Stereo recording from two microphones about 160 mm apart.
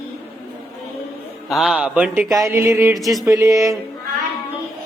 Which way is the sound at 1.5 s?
Centre (ahead or behind).